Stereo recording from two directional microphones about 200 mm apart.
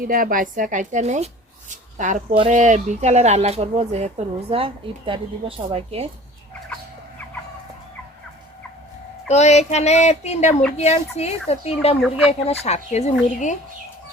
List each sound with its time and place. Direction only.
0.0 s speech: 45° right (ahead or behind)
9.3 s child singing: 35° left (ahead or behind)
11.9 s speech: centre (ahead or behind)
12.5 s child singing: 30° left (ahead or behind)